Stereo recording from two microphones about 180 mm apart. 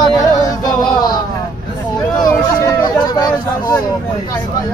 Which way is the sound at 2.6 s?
20° left (ahead or behind).